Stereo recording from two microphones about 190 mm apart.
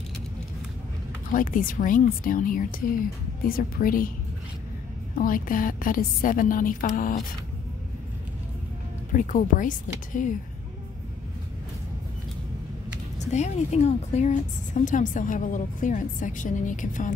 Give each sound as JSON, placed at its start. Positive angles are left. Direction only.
{"t": 1.3, "sound": "a woman's voice", "side_deg": 45}
{"t": 5.1, "sound": "a woman's voice", "side_deg": 45}
{"t": 9.1, "sound": "a woman's voice", "side_deg": 45}
{"t": 13.3, "sound": "a woman's voice", "side_deg": 35}